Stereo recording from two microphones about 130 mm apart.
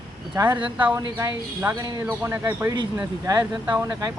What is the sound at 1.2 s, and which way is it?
Speech, 25° right (ahead or behind).